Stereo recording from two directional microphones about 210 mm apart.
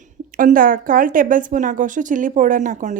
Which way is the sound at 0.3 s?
40° right (ahead or behind).